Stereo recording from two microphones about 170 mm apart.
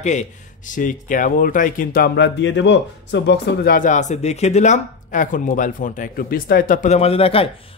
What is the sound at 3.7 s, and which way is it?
Speech, 45° left (ahead or behind).